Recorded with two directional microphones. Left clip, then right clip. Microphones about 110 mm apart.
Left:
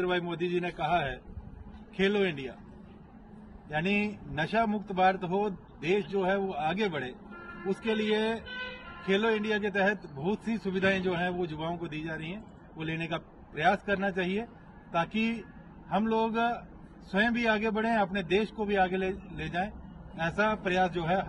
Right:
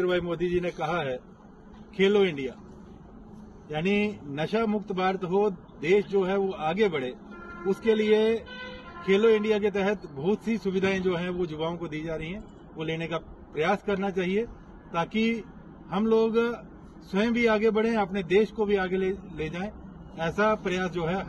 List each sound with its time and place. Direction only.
0.1 s a man's voice: 20° left (ahead or behind)
3.6 s a man's voice: 20° left (ahead or behind)